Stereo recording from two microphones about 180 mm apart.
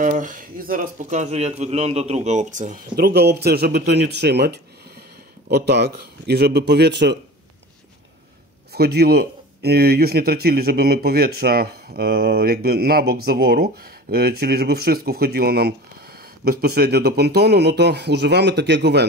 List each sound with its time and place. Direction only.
0.0 s speech: 45° right (ahead or behind); by 7.2 s 70° right (ahead or behind)
8.7 s speech: 60° right (ahead or behind)